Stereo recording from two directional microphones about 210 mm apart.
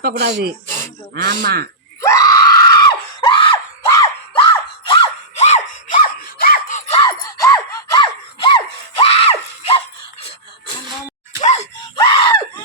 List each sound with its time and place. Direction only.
0.0 s speech: 50° right (ahead or behind)
2.0 s screaming: 15° left (ahead or behind); by 7.0 s 35° left (ahead or behind)
7.0 s a sound: 20° left (ahead or behind)
8.4 s screaming: 25° left (ahead or behind)
11.3 s a sound: 35° left (ahead or behind)
11.9 s screaming: 20° left (ahead or behind)